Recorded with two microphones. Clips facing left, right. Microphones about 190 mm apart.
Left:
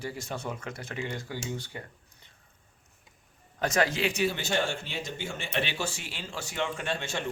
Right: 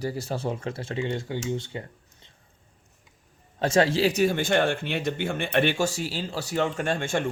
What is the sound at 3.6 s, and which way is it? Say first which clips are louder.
Speech: right 6 dB; 30° right (ahead or behind).